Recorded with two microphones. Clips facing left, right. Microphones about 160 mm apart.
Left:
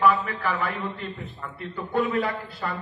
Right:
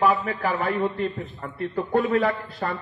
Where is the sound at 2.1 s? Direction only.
35° right (ahead or behind).